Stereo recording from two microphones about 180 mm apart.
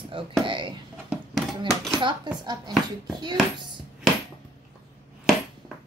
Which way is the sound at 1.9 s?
25° right (ahead or behind).